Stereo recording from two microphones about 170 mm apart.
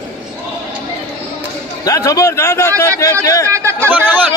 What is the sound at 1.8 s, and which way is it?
A man's voice, 20° left (ahead or behind).